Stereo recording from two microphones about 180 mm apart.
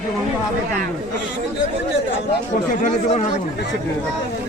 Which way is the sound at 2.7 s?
45° left (ahead or behind).